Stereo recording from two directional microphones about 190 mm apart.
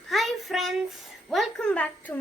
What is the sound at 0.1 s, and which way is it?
A child's voice, centre (ahead or behind).